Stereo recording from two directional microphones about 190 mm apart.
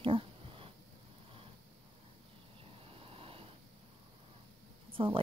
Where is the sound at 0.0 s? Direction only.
30° right (ahead or behind).